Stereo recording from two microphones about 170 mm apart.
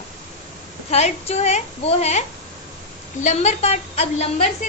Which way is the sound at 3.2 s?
40° left (ahead or behind).